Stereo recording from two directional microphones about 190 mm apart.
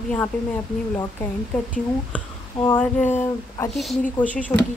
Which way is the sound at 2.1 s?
10° left (ahead or behind).